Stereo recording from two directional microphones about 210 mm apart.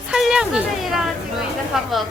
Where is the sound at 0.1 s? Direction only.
5° right (ahead or behind).